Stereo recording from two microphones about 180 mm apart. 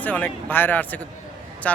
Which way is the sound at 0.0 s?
10° left (ahead or behind).